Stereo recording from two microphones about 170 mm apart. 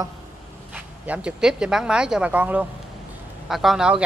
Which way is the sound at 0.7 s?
5° right (ahead or behind).